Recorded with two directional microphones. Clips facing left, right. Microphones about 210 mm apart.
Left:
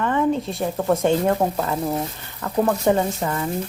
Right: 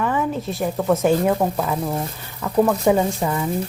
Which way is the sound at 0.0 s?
5° right (ahead or behind).